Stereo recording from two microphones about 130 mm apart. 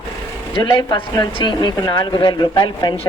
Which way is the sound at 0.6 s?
35° left (ahead or behind).